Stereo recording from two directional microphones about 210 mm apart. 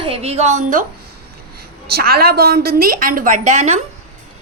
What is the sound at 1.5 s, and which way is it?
A woman's voice, 50° right (ahead or behind).